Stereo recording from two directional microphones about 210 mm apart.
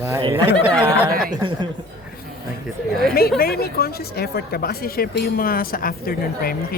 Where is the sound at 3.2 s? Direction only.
45° left (ahead or behind).